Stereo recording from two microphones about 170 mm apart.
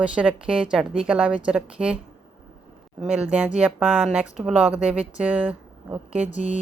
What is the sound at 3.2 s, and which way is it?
Speech, 5° right (ahead or behind).